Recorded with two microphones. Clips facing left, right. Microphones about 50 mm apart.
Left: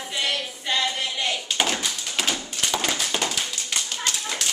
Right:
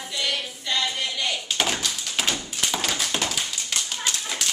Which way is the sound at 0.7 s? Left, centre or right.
Centre.